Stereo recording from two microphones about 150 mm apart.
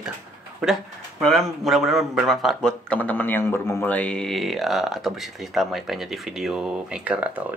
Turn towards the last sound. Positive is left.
turn(degrees=-10)  # may be behind; listen again after turning